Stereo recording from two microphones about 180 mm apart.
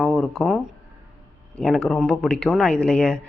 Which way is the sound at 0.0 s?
Centre (ahead or behind).